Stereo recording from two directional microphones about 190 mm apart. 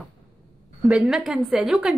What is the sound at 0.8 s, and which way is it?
A woman's voice, centre (ahead or behind).